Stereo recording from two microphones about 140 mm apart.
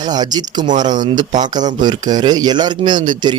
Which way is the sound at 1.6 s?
30° right (ahead or behind).